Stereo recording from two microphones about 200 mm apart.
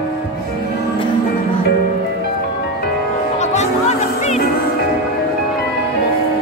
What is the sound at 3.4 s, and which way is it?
Music, 35° left (ahead or behind).